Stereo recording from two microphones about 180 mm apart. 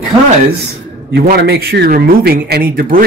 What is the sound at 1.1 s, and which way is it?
Speech, 65° right (ahead or behind).